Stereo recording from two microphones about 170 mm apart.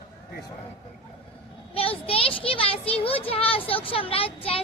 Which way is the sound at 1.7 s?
35° left (ahead or behind).